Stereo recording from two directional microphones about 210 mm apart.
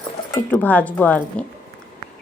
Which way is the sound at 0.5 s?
5° left (ahead or behind).